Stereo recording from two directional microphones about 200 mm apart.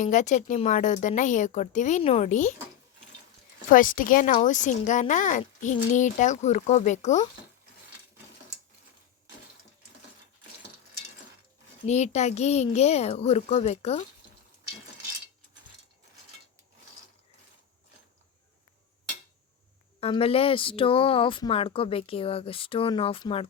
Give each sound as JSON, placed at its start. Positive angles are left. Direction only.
{"t": 0.0, "sound": "a child's voice", "side_deg": 40}
{"t": 3.7, "sound": "a child's voice", "side_deg": 45}
{"t": 11.9, "sound": "a child's voice", "side_deg": 35}
{"t": 20.0, "sound": "speech", "side_deg": 30}